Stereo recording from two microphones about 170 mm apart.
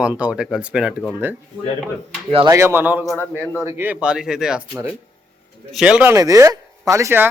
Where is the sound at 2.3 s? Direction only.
30° right (ahead or behind).